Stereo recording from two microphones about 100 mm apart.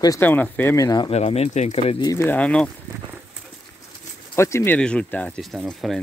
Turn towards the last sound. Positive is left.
turn(degrees=0)  # may be behind; listen again after turning